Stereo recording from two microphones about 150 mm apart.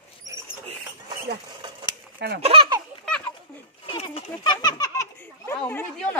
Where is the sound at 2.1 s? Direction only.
90° right.